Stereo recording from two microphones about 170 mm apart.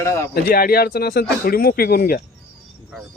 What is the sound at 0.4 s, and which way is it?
A man's voice, 60° left (ahead or behind).